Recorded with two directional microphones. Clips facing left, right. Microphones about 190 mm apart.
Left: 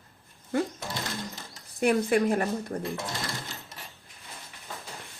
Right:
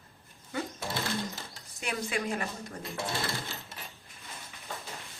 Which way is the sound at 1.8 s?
55° left (ahead or behind).